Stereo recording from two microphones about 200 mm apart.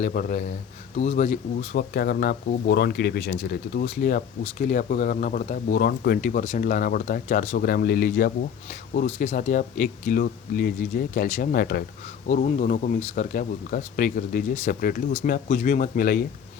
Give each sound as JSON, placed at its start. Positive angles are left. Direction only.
{"t": 0.0, "sound": "speech", "side_deg": 40}
{"t": 1.7, "sound": "speech", "side_deg": 50}
{"t": 9.0, "sound": "speech", "side_deg": 35}
{"t": 12.3, "sound": "speech", "side_deg": 40}